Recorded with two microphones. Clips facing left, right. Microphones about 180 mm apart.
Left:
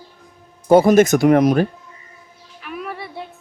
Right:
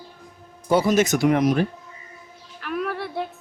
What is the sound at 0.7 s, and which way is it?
Speech, 50° left (ahead or behind).